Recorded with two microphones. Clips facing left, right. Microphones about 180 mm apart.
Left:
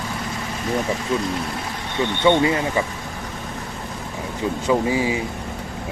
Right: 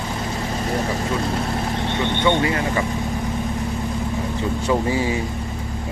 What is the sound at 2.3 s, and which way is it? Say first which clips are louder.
Speech: left 4 dB; 20° left (ahead or behind).